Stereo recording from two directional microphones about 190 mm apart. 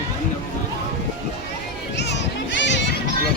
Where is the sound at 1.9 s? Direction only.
65° left (ahead or behind).